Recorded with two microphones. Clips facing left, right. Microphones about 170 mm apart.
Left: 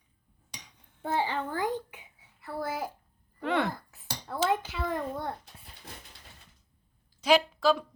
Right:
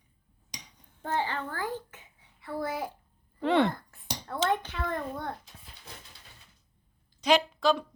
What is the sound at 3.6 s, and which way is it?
Cutlery, centre (ahead or behind).